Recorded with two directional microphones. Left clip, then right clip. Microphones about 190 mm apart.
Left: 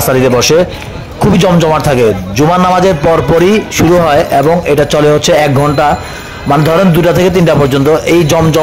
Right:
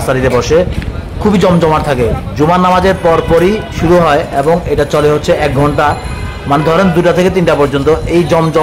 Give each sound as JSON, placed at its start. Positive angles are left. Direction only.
{"t": 0.1, "sound": "a man's voice", "side_deg": 30}